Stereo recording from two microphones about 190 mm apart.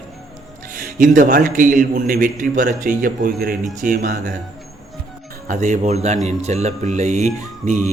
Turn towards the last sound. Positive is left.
turn(degrees=-35)  # may be behind; listen again after turning